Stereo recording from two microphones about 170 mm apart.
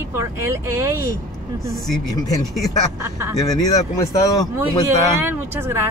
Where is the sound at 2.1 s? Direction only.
20° left (ahead or behind).